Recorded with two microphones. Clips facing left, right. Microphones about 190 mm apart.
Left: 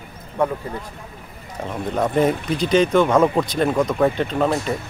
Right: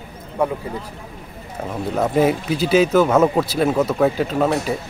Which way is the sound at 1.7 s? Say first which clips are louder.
Right 1 dB; 5° right (ahead or behind).